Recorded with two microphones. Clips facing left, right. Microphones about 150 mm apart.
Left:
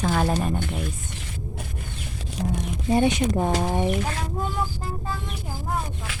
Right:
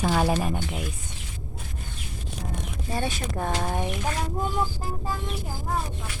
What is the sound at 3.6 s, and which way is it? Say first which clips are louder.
Speech: left 4 dB; centre (ahead or behind).